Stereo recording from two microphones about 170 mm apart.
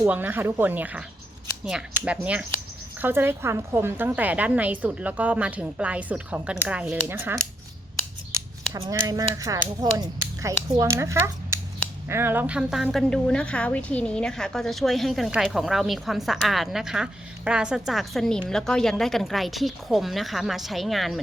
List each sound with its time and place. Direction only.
0.0 s a woman's voice: 10° right (ahead or behind)
2.0 s a woman's voice: 5° right (ahead or behind)
8.7 s speech: 20° right (ahead or behind); by 21.2 s centre (ahead or behind)